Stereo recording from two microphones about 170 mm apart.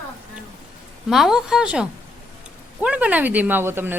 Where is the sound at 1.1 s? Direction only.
Centre (ahead or behind).